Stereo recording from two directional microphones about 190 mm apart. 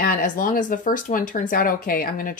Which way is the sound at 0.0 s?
45° left (ahead or behind).